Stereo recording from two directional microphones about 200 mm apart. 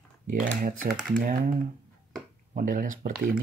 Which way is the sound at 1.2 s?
40° right (ahead or behind).